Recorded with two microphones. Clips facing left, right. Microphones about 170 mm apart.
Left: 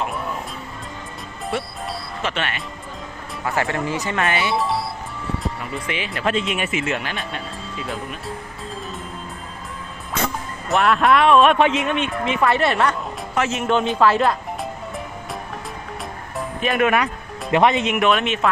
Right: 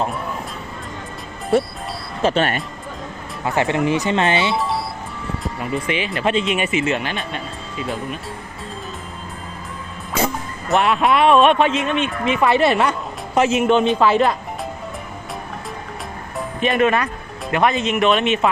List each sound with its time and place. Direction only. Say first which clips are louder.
2.2 s speech: right 9 dB; 40° right (ahead or behind)
3.4 s speech: right 4 dB; 20° right (ahead or behind)
4.5 s music: even; centre (ahead or behind)
5.4 s speech: right 4 dB; centre (ahead or behind)
10.7 s speech: even; centre (ahead or behind)
11.5 s speech: even; 15° left (ahead or behind)
12.2 s speech: right 3 dB; 5° right (ahead or behind)
13.3 s speech: right 6 dB; 15° right (ahead or behind)
13.7 s speech: right 2 dB; centre (ahead or behind)
16.6 s speech: right 2 dB; 5° left (ahead or behind)